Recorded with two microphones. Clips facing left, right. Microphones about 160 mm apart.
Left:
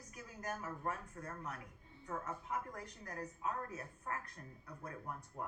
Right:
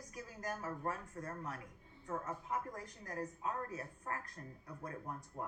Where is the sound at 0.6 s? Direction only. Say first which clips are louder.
Right 1 dB; 40° right (ahead or behind).